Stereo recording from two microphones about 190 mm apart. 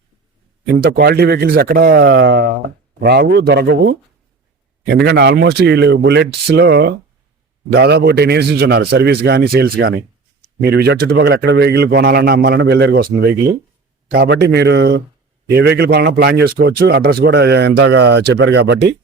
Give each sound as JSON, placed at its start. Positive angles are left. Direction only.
{"t": 0.7, "sound": "a man's voice", "side_deg": -55}
{"t": 5.0, "sound": "a man's voice", "side_deg": -60}